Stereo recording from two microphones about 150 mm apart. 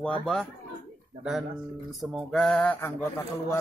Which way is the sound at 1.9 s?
Centre (ahead or behind).